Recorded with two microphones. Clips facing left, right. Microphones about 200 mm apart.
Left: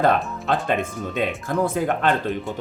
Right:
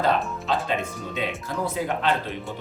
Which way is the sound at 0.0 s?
55° left (ahead or behind).